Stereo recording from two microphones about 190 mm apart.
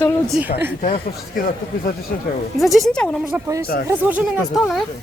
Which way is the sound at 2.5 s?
Centre (ahead or behind).